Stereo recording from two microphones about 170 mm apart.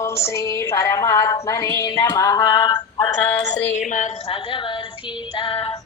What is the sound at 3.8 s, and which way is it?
Speech, 45° left (ahead or behind).